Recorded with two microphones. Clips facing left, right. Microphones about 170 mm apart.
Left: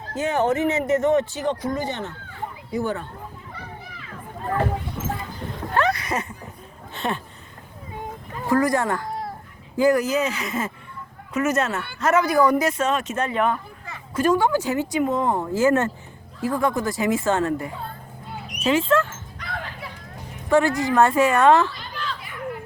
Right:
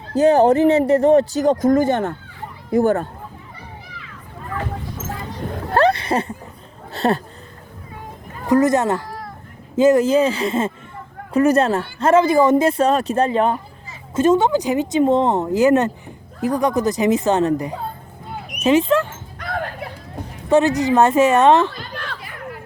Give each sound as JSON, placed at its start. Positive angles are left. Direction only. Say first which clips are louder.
{"t": 0.1, "sound": "speech", "louder": "right 9 dB", "side_deg": -35}
{"t": 5.7, "sound": "a sound", "louder": "right 6 dB", "side_deg": -30}
{"t": 6.9, "sound": "speech", "louder": "right 8 dB", "side_deg": -40}
{"t": 8.4, "sound": "speech", "louder": "right 5 dB", "side_deg": -20}
{"t": 9.0, "sound": "a sound", "louder": "left 3 dB", "side_deg": 25}
{"t": 9.7, "sound": "speech", "louder": "right 6 dB", "side_deg": -25}
{"t": 19.4, "sound": "dog", "louder": "right 8 dB", "side_deg": -50}
{"t": 20.5, "sound": "speech", "louder": "right 4 dB", "side_deg": -20}
{"t": 21.7, "sound": "a sound", "louder": "right 1 dB", "side_deg": -60}